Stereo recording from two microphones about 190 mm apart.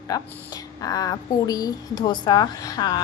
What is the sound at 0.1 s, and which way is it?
A woman's voice, 20° left (ahead or behind).